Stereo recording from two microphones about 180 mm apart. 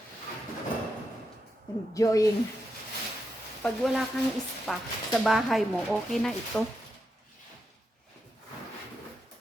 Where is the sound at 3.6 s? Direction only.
Centre (ahead or behind).